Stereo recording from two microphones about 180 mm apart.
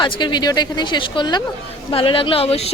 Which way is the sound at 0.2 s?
25° left (ahead or behind).